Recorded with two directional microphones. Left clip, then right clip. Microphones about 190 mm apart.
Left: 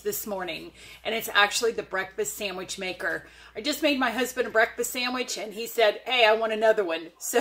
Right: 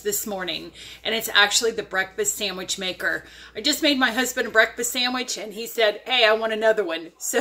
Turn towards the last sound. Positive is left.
turn(degrees=-15)  # may be behind; listen again after turning